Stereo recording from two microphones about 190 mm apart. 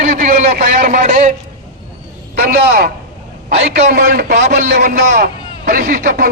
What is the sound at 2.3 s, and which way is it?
Speech, 55° right (ahead or behind).